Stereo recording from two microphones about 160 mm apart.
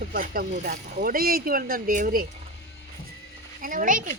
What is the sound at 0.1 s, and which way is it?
Speech, 60° right (ahead or behind).